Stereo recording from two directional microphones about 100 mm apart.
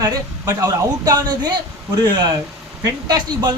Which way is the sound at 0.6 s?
40° right (ahead or behind).